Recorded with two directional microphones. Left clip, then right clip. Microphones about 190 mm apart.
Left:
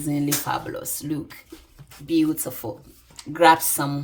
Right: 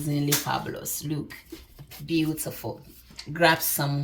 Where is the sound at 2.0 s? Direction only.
65° left (ahead or behind).